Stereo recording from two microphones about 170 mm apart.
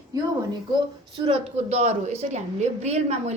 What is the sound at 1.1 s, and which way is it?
A woman's voice, 30° right (ahead or behind).